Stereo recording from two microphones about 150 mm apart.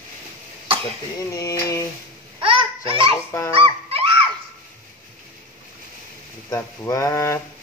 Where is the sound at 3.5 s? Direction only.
35° right (ahead or behind).